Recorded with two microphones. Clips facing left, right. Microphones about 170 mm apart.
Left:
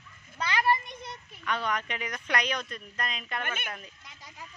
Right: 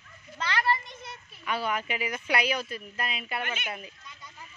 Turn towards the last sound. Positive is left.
turn(degrees=55)  # may be behind; listen again after turning